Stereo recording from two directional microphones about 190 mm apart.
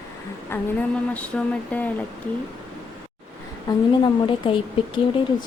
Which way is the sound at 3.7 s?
20° left (ahead or behind).